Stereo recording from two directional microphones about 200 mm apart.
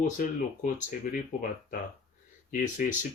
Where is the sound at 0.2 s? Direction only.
40° left (ahead or behind).